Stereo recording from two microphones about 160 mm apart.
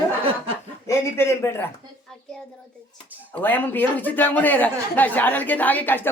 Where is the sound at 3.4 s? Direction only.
10° left (ahead or behind).